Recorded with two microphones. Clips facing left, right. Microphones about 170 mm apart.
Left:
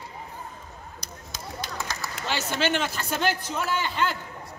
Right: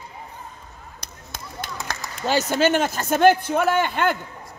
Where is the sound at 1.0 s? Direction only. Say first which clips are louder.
Right 1 dB; 55° right (ahead or behind).